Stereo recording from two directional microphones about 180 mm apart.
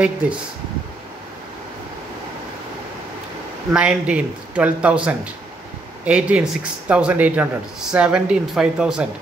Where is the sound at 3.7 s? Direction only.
5° right (ahead or behind).